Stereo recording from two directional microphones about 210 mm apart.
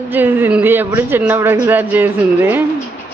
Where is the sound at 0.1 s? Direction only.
10° right (ahead or behind).